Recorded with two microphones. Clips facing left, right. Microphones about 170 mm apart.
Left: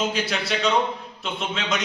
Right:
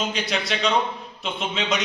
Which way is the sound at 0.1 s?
5° left (ahead or behind).